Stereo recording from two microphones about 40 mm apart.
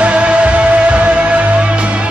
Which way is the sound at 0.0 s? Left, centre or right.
Right.